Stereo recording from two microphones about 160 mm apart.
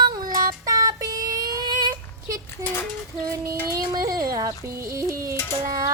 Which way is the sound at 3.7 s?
25° right (ahead or behind).